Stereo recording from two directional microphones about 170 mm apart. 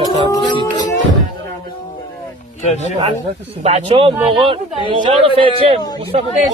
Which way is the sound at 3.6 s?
35° right (ahead or behind).